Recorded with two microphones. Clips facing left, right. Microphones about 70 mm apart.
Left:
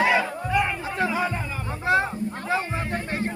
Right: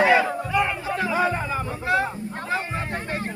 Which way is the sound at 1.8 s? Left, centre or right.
Left.